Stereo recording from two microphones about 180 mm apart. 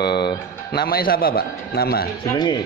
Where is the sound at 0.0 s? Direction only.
65° left (ahead or behind).